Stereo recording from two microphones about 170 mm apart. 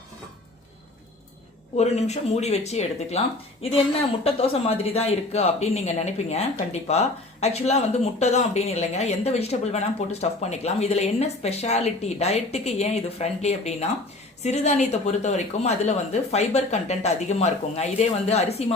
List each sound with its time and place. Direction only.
1.7 s speech: 40° left (ahead or behind)